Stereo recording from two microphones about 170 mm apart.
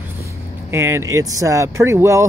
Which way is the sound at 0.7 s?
15° right (ahead or behind).